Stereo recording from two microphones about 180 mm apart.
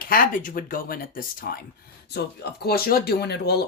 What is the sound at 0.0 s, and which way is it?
Speech, 50° left (ahead or behind).